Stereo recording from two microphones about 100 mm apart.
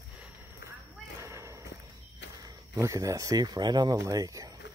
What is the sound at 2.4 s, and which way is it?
Speech, 35° right (ahead or behind).